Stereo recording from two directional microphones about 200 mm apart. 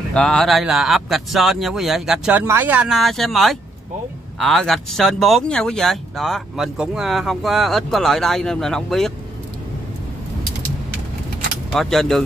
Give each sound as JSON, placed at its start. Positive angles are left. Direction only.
{"t": 0.1, "sound": "speech", "side_deg": 5}
{"t": 11.7, "sound": "speech", "side_deg": 0}